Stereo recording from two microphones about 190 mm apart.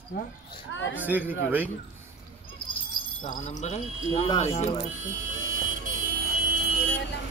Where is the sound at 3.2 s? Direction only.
40° left (ahead or behind).